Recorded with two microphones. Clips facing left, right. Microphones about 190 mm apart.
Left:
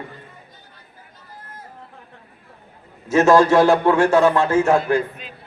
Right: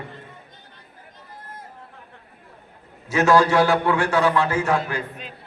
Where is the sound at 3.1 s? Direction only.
45° left (ahead or behind).